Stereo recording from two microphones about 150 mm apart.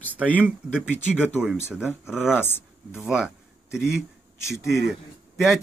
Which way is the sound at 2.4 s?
15° left (ahead or behind).